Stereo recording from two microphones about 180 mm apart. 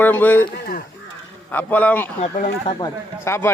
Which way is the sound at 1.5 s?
10° left (ahead or behind).